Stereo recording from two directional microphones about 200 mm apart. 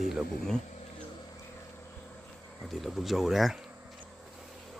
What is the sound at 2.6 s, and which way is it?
Speech, centre (ahead or behind).